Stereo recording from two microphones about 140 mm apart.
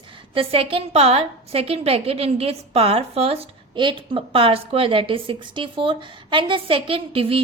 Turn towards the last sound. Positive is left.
turn(degrees=-40)  # may be behind; listen again after turning